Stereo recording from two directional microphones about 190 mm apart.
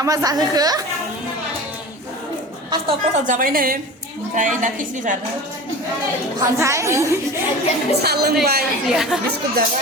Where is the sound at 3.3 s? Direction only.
45° right (ahead or behind).